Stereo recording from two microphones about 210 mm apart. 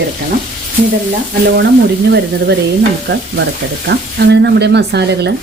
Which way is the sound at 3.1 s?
55° right (ahead or behind).